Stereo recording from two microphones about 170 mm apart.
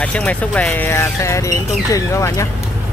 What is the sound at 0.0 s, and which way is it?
Speech, 10° left (ahead or behind).